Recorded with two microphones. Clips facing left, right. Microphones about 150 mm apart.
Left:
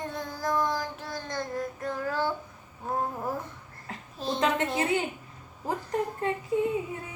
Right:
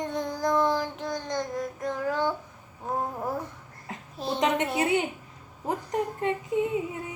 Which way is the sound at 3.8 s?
15° right (ahead or behind).